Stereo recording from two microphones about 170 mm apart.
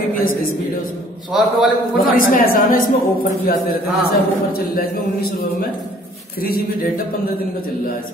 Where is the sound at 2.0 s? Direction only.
55° left (ahead or behind).